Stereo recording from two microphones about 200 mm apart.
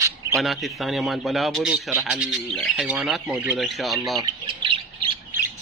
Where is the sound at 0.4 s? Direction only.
Centre (ahead or behind).